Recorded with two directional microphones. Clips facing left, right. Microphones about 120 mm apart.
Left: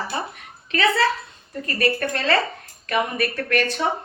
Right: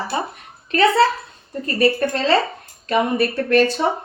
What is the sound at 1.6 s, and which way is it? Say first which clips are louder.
Speech: right 5 dB; 25° right (ahead or behind).